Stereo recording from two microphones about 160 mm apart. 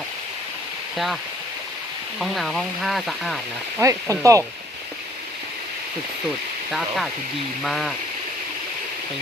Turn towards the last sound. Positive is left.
turn(degrees=0)  # may be behind; listen again after turning